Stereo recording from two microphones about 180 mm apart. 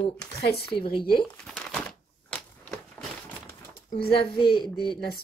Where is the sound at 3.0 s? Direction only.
5° left (ahead or behind).